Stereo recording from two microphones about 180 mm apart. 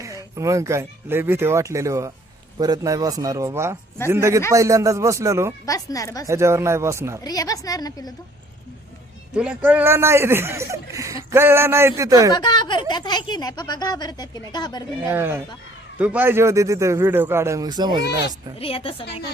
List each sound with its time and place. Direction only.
0.0 s speech: 15° right (ahead or behind)
5.6 s speech: 20° left (ahead or behind)
6.2 s speech: 15° right (ahead or behind)
7.3 s speech: 20° left (ahead or behind)
9.3 s speech: 5° right (ahead or behind)
12.3 s speech: 25° left (ahead or behind)
15.0 s speech: 10° right (ahead or behind)
18.6 s a woman's voice: 30° left (ahead or behind)